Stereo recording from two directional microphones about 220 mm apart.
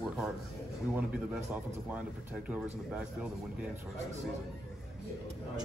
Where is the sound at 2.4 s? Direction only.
5° right (ahead or behind).